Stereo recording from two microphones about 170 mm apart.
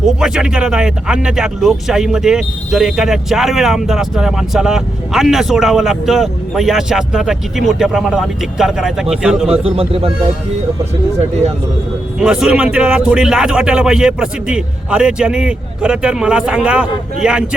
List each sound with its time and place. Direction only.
0.2 s speech: 5° right (ahead or behind)
9.5 s a man's voice: 35° right (ahead or behind)
12.2 s speech: 5° right (ahead or behind)